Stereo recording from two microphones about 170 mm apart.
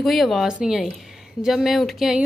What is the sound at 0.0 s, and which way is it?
A woman's voice, centre (ahead or behind).